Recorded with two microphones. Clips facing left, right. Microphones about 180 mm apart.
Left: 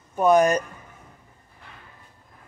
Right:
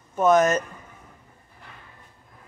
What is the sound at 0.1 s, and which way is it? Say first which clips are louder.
Speech: left 1 dB; 15° left (ahead or behind).